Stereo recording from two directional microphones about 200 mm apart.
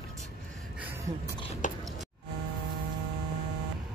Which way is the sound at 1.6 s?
40° left (ahead or behind).